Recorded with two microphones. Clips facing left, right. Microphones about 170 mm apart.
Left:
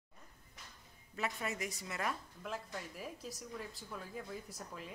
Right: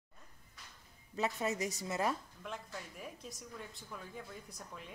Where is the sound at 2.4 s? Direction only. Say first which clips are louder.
Left 2 dB; centre (ahead or behind).